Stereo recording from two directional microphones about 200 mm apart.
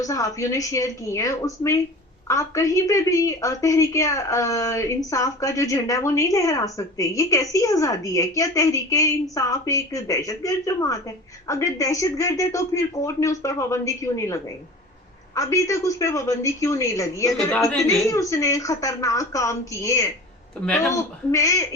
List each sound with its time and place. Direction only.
0.0 s a woman's voice: 15° left (ahead or behind)
17.5 s a woman's voice: 5° left (ahead or behind)
18.1 s a woman's voice: 15° left (ahead or behind)